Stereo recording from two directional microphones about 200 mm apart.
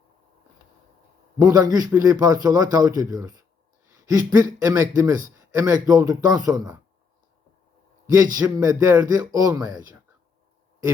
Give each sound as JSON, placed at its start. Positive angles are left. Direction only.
{"t": 1.4, "sound": "a man's voice", "side_deg": -20}
{"t": 8.0, "sound": "a man's voice", "side_deg": -15}